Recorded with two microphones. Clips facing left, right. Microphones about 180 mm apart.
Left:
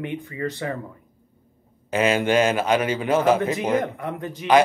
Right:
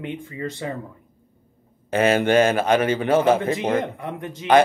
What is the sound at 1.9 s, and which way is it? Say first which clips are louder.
A man's voice: right 2 dB; 55° right (ahead or behind).